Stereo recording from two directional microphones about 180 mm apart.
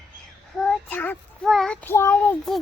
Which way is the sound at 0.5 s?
5° left (ahead or behind).